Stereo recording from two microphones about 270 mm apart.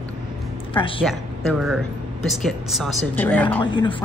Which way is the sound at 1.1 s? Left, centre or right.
Centre.